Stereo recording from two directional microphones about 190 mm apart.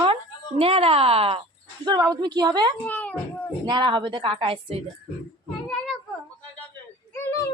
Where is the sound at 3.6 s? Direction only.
25° right (ahead or behind).